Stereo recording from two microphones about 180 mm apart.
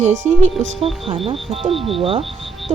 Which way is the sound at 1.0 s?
30° right (ahead or behind).